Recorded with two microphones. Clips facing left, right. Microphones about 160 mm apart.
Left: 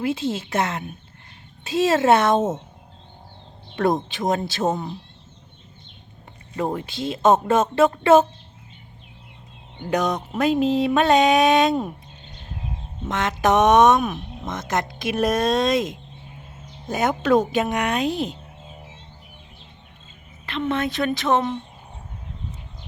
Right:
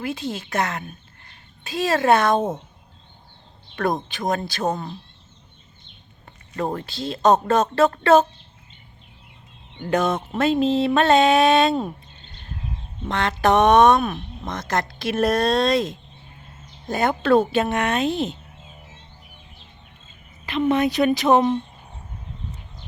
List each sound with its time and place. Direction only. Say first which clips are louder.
0.0 s speech: left 4 dB; 25° left (ahead or behind)
3.8 s speech: left 3 dB; 25° left (ahead or behind)
6.6 s speech: left 1 dB; 10° left (ahead or behind)
9.9 s speech: right 1 dB; centre (ahead or behind)
10.3 s speech: even; 10° left (ahead or behind)
20.4 s a woman's voice: right 4 dB; 5° right (ahead or behind)